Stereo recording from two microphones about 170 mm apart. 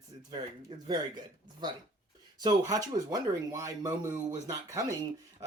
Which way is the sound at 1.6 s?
25° right (ahead or behind).